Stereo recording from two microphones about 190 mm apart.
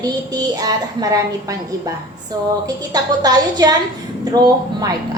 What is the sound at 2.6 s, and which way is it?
A woman's voice, 20° right (ahead or behind).